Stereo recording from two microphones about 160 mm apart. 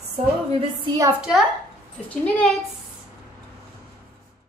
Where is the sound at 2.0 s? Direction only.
10° left (ahead or behind).